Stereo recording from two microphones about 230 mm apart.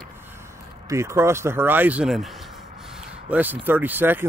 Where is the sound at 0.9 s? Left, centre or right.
Centre.